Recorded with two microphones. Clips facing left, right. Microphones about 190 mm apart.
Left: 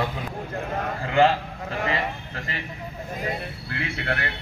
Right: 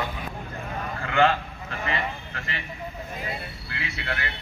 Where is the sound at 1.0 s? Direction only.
35° left (ahead or behind).